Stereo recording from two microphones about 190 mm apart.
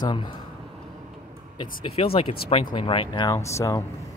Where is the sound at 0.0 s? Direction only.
25° left (ahead or behind).